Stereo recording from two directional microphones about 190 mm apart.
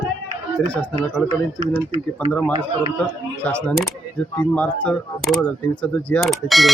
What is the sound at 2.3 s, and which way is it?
Speech, 10° left (ahead or behind).